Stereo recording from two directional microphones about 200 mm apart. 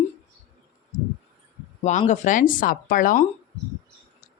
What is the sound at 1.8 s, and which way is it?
Speech, 35° left (ahead or behind).